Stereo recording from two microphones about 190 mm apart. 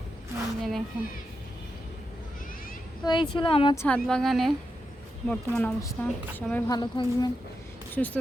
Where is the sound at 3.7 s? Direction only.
10° left (ahead or behind).